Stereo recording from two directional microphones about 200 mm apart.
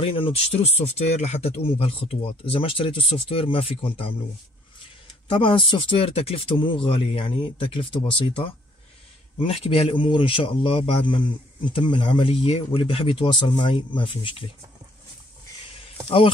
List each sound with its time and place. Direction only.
0.0 s speech: 30° left (ahead or behind)
5.3 s speech: 25° left (ahead or behind)
9.5 s speech: 30° left (ahead or behind)